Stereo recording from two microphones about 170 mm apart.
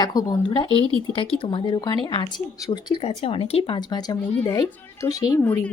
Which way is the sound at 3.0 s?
35° left (ahead or behind).